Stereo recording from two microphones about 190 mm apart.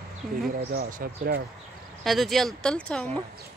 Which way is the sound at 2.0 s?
Centre (ahead or behind).